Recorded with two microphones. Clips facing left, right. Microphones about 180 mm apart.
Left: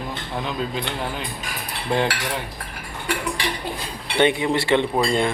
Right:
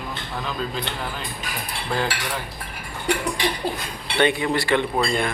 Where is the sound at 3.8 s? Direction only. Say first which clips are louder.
Left 4 dB; 25° left (ahead or behind).